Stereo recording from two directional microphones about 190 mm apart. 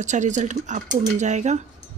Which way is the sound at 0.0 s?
40° right (ahead or behind).